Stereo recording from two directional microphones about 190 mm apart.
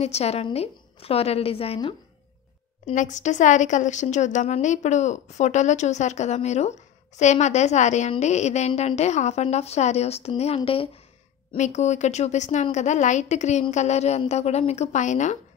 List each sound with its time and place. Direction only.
0.0 s speech: 35° left (ahead or behind)
2.8 s speech: 40° left (ahead or behind)